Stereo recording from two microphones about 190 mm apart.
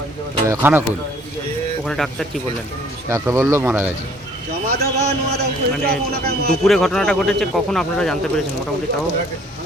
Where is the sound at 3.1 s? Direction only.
15° right (ahead or behind).